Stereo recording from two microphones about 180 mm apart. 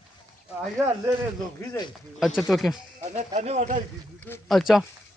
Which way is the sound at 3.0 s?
40° right (ahead or behind).